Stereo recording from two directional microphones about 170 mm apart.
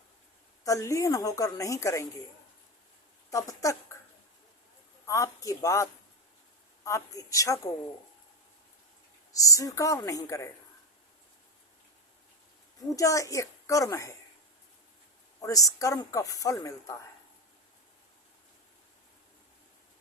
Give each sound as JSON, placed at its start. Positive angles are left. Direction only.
{"t": 0.6, "sound": "speech", "side_deg": 20}
{"t": 3.2, "sound": "speech", "side_deg": 20}
{"t": 5.0, "sound": "a woman's voice", "side_deg": 20}
{"t": 9.3, "sound": "speech", "side_deg": 20}
{"t": 12.9, "sound": "speech", "side_deg": 20}
{"t": 15.4, "sound": "speech", "side_deg": 20}